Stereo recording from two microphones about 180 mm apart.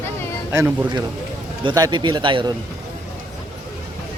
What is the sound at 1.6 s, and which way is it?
Speech, 25° right (ahead or behind).